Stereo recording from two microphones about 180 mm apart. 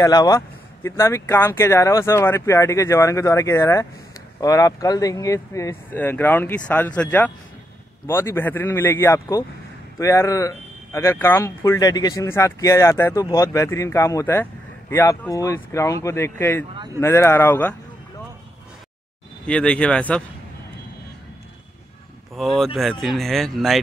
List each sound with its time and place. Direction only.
0.0 s speech: 20° left (ahead or behind)
16.7 s a sound: 25° right (ahead or behind)
17.0 s speech: 15° left (ahead or behind)
19.4 s speech: 5° left (ahead or behind)
22.3 s speech: centre (ahead or behind)